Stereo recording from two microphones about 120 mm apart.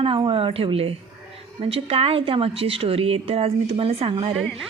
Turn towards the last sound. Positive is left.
turn(degrees=0)  # may be behind; listen again after turning